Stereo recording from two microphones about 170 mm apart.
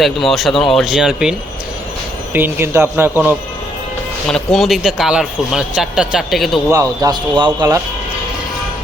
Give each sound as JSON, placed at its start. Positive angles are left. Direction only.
{"t": 0.0, "sound": "speech", "side_deg": 0}
{"t": 2.3, "sound": "speech", "side_deg": -15}
{"t": 4.3, "sound": "speech", "side_deg": 5}
{"t": 6.7, "sound": "speech", "side_deg": -20}